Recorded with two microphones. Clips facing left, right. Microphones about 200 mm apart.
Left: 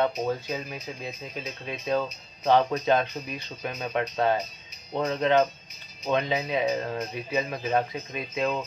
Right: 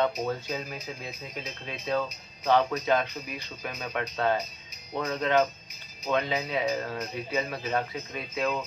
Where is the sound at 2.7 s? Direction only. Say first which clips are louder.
Left 2 dB; 25° left (ahead or behind).